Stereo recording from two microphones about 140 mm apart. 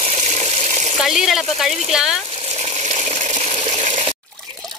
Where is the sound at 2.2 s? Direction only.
50° right (ahead or behind).